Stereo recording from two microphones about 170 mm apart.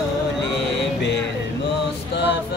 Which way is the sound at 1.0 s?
90° left.